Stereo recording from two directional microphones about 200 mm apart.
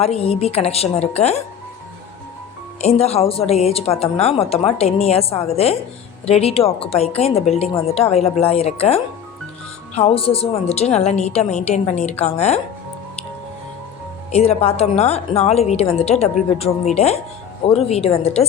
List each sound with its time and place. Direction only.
0.0 s a woman's voice: 30° left (ahead or behind)
2.8 s a woman's voice: 30° left (ahead or behind)
14.3 s a woman's voice: 30° left (ahead or behind)